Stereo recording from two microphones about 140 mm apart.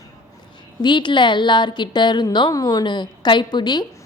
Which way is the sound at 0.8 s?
35° left (ahead or behind).